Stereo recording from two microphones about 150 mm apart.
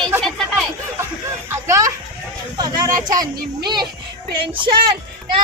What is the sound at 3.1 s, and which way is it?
Speech, 30° right (ahead or behind).